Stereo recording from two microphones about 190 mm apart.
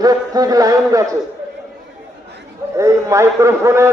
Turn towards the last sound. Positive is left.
turn(degrees=-15)  # may be behind; listen again after turning